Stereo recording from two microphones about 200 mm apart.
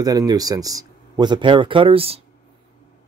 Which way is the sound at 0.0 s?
20° right (ahead or behind).